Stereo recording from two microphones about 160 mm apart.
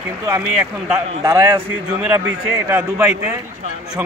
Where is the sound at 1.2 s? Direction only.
20° right (ahead or behind).